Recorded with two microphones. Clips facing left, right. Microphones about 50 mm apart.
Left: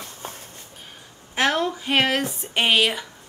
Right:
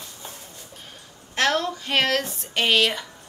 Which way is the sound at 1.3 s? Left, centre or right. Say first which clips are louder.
Left 1 dB; centre.